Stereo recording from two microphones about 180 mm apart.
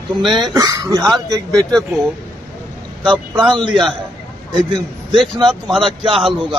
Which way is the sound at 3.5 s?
25° right (ahead or behind).